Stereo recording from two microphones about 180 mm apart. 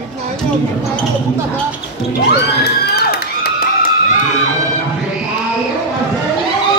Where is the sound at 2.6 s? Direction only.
65° left (ahead or behind).